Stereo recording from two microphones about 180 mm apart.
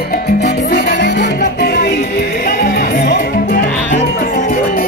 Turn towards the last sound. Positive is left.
turn(degrees=60)  # may be behind; listen again after turning